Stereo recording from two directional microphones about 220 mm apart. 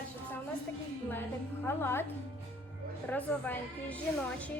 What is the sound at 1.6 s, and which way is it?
Speech, 10° left (ahead or behind).